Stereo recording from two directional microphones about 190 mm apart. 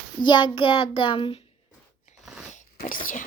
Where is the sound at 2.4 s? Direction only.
40° left (ahead or behind).